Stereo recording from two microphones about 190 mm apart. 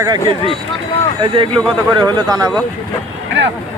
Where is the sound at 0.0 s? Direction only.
20° right (ahead or behind).